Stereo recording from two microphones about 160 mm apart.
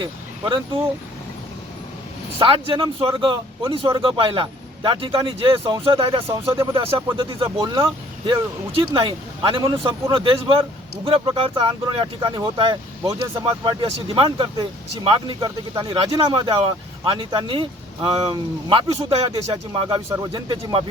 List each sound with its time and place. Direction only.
0.0 s speech: 30° right (ahead or behind)
2.4 s speech: 35° right (ahead or behind)
6.2 s speech: 15° right (ahead or behind)
7.2 s speech: 30° right (ahead or behind)
20.1 s speech: 15° right (ahead or behind)
20.5 s speech: 30° right (ahead or behind)